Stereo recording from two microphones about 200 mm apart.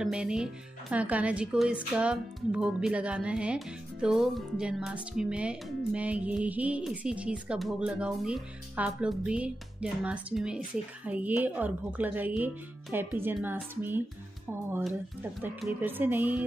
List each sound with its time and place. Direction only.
0.0 s speech: 5° right (ahead or behind)
15.4 s speech: 10° right (ahead or behind)